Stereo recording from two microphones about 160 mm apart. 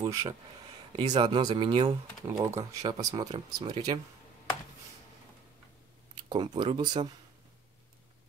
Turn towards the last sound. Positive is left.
turn(degrees=-30)  # may be behind; listen again after turning